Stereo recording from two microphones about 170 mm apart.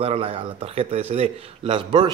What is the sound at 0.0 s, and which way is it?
A man's voice, 35° right (ahead or behind).